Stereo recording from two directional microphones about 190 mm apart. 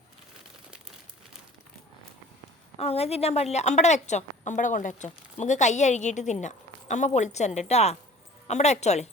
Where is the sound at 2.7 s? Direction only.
30° left (ahead or behind).